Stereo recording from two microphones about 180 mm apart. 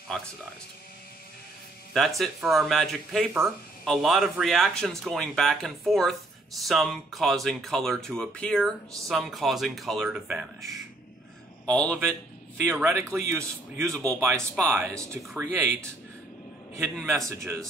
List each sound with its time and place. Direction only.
0.1 s speech: 5° left (ahead or behind)
2.0 s speech: centre (ahead or behind)
11.6 s a man's voice: 5° left (ahead or behind)
12.6 s a man's voice: 15° right (ahead or behind)
17.0 s a man's voice: 15° right (ahead or behind)